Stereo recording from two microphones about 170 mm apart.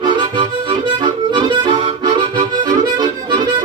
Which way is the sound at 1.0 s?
25° right (ahead or behind).